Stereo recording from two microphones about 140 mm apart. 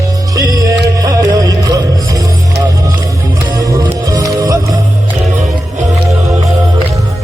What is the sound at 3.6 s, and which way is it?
Music, 25° right (ahead or behind).